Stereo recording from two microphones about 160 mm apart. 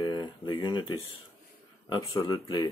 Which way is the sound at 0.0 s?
30° left (ahead or behind).